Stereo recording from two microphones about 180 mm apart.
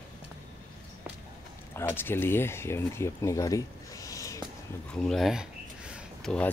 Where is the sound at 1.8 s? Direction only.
10° left (ahead or behind).